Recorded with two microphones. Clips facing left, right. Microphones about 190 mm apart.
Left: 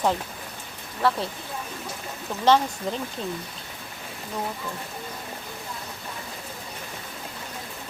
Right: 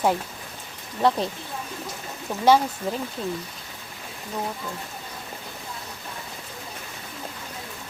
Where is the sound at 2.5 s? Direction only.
10° right (ahead or behind).